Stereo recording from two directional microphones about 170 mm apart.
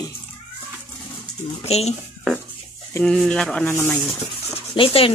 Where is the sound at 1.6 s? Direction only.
40° left (ahead or behind).